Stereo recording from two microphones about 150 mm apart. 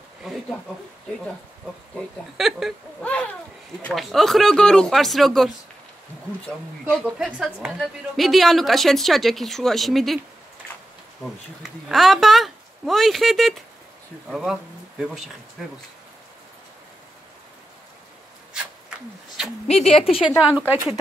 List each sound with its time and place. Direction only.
2.0 s a woman's voice: centre (ahead or behind)
6.9 s a woman's voice: 5° right (ahead or behind)
11.6 s a woman's voice: centre (ahead or behind)
18.5 s rub: 5° right (ahead or behind)
19.9 s a woman's voice: 40° left (ahead or behind)
20.4 s speech: 10° right (ahead or behind)